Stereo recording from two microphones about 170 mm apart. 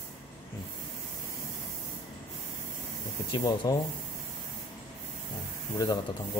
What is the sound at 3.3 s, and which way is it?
Speech, 20° left (ahead or behind).